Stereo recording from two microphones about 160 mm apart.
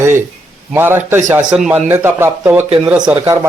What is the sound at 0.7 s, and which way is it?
Speech, 15° right (ahead or behind).